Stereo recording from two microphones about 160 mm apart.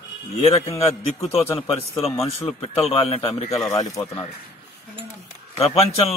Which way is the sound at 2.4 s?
40° left (ahead or behind).